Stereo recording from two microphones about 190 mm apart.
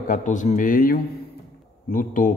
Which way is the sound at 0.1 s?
40° left (ahead or behind).